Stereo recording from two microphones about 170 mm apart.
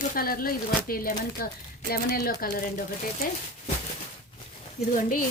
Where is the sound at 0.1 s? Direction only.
55° left (ahead or behind).